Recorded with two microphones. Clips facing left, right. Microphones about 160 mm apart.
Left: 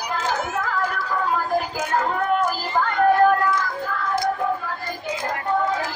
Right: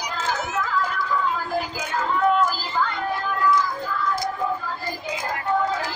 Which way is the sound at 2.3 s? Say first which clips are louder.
Left 1 dB; 55° left (ahead or behind).